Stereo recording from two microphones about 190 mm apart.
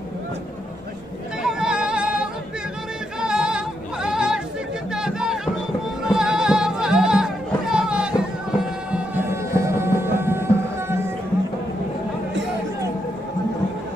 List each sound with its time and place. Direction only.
1.4 s music: 5° right (ahead or behind)